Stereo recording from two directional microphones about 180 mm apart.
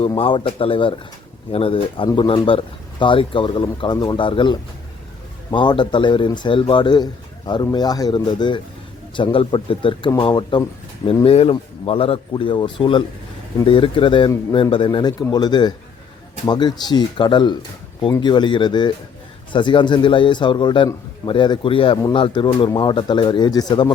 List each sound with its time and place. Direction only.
0.1 s a man's voice: 30° left (ahead or behind)